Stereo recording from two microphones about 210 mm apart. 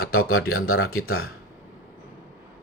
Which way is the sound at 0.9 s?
45° left (ahead or behind).